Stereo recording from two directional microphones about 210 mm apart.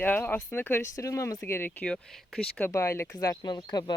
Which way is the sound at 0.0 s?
10° left (ahead or behind).